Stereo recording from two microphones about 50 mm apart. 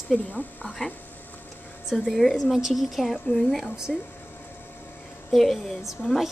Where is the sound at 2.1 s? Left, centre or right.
Centre.